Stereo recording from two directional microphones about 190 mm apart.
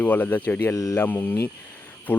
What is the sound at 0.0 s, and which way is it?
Speech, 10° left (ahead or behind).